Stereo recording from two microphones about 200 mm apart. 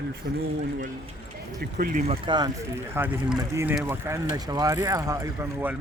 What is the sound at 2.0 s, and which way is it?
Speech, 25° right (ahead or behind).